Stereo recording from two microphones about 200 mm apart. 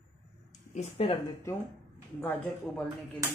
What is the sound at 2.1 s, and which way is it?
Speech, 5° left (ahead or behind).